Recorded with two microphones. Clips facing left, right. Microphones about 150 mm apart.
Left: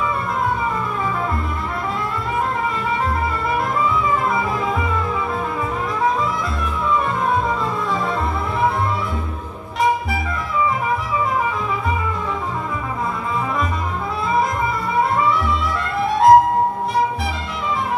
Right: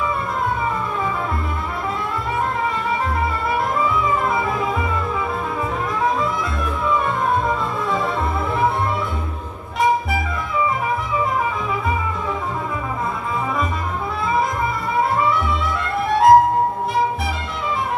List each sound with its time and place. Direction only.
4.3 s music: centre (ahead or behind)
7.4 s music: centre (ahead or behind)
16.1 s music: centre (ahead or behind)